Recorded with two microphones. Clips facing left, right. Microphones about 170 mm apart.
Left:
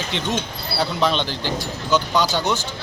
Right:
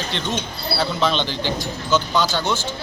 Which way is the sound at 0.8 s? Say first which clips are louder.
Left 1 dB; 10° left (ahead or behind).